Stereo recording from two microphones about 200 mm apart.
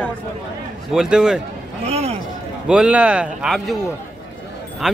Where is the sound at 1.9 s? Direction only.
30° right (ahead or behind).